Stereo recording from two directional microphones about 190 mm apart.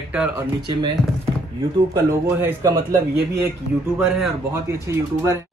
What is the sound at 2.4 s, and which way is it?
Speech, 15° right (ahead or behind).